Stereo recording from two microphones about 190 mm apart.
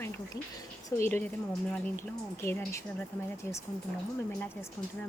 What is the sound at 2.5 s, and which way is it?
Speech, 10° left (ahead or behind).